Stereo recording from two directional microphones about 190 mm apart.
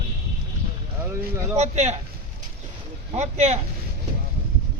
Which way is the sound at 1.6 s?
35° right (ahead or behind).